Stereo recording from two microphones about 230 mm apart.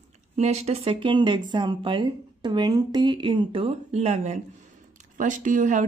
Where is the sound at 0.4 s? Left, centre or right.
Right.